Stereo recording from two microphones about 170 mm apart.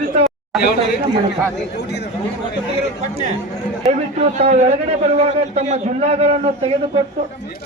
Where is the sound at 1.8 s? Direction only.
85° left.